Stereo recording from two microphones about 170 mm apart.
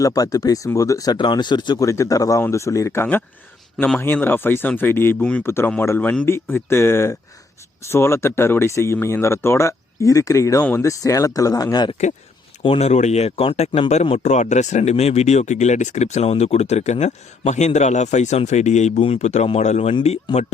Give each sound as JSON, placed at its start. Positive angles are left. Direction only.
{"t": 0.0, "sound": "speech", "side_deg": 20}
{"t": 12.6, "sound": "speech", "side_deg": 35}